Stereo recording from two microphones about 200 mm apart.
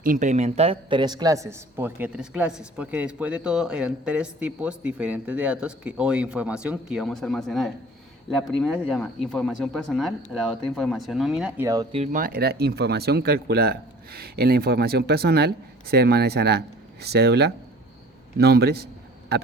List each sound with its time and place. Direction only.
0.0 s speech: 40° right (ahead or behind); by 11.9 s 15° right (ahead or behind)
11.9 s speech: 30° right (ahead or behind)
12.2 s speech: 50° right (ahead or behind)